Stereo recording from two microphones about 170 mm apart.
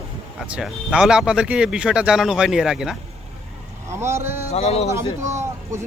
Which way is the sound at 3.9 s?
15° right (ahead or behind).